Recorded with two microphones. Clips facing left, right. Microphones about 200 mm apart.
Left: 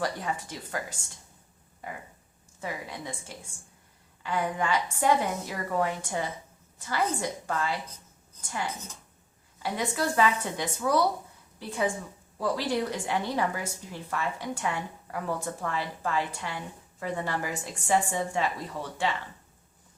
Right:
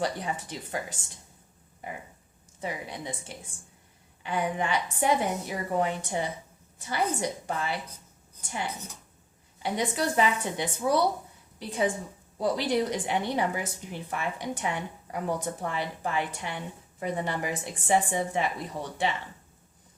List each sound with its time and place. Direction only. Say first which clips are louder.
0.0 s a woman's voice: right 1 dB; 20° right (ahead or behind)
2.6 s a woman's voice: right 1 dB; 20° right (ahead or behind)